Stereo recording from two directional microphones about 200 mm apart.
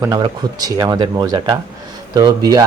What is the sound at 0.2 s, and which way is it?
Speech, 20° right (ahead or behind).